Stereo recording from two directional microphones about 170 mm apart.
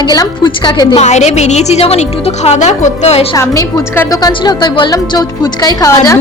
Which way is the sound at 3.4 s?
20° left (ahead or behind).